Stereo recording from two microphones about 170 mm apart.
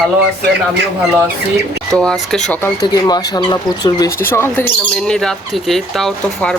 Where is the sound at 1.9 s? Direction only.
5° left (ahead or behind).